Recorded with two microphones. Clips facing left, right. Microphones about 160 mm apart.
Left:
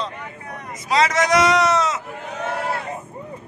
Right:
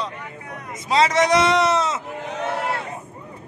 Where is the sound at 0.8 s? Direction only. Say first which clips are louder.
Right 1 dB; 30° right (ahead or behind).